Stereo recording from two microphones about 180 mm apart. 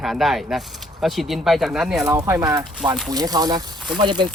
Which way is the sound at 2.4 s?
20° right (ahead or behind).